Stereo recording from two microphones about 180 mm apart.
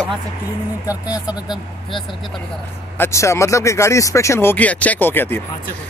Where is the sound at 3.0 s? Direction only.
15° left (ahead or behind).